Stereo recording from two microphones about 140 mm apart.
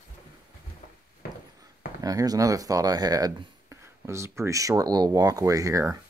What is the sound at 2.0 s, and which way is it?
Speech, 25° right (ahead or behind).